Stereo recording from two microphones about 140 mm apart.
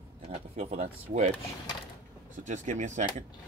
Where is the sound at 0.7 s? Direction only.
55° right (ahead or behind).